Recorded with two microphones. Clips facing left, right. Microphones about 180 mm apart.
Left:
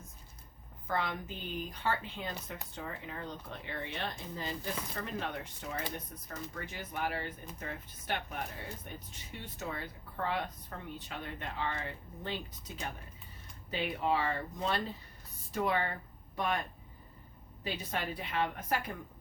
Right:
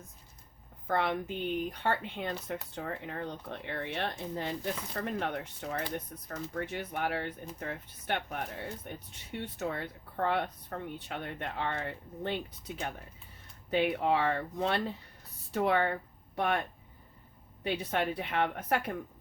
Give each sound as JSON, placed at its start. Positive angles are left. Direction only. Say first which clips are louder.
{"t": 0.9, "sound": "speech", "louder": "right 5 dB", "side_deg": -60}